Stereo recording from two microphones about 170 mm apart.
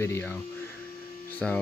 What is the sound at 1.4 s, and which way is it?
Speech, 5° left (ahead or behind).